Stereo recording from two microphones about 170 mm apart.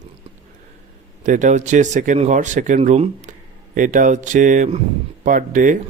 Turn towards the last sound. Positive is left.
turn(degrees=-50)  # may be behind; listen again after turning